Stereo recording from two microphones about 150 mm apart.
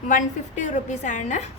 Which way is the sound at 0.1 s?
55° left (ahead or behind).